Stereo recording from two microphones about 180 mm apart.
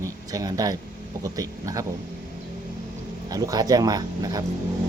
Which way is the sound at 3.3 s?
20° right (ahead or behind).